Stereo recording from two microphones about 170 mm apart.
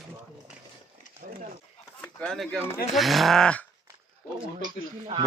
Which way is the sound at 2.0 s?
5° left (ahead or behind).